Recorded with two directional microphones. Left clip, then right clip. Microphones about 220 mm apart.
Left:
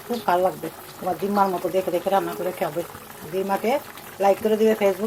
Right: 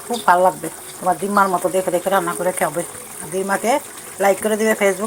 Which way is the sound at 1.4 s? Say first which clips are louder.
Right 4 dB; 5° right (ahead or behind).